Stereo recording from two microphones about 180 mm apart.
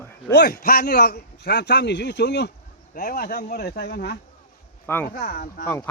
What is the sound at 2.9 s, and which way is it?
Speech, 55° left (ahead or behind).